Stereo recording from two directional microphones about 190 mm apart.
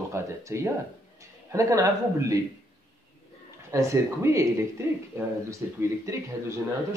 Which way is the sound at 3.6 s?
15° right (ahead or behind).